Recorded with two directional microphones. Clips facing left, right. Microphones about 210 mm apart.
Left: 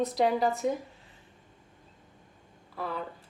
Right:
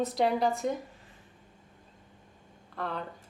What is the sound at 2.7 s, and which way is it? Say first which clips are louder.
Speech: even; 5° left (ahead or behind).